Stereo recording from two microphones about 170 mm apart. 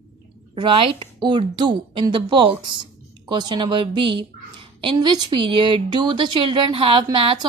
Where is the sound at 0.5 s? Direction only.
30° right (ahead or behind).